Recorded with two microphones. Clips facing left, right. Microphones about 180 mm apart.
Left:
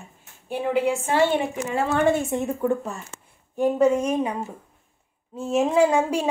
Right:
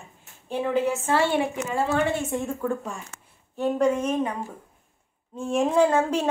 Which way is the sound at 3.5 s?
10° left (ahead or behind).